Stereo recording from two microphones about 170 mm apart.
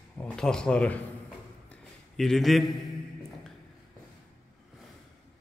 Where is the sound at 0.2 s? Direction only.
5° left (ahead or behind).